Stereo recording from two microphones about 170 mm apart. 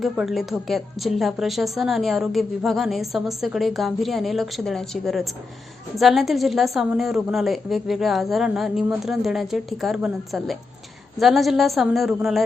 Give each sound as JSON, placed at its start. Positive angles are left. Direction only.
{"t": 0.0, "sound": "a woman's voice", "side_deg": 0}